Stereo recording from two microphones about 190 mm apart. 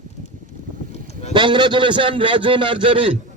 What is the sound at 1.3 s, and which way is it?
A man's voice, 25° right (ahead or behind).